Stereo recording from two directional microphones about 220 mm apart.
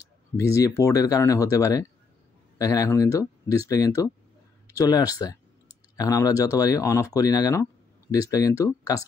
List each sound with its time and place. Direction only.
0.0 s speech: 15° left (ahead or behind)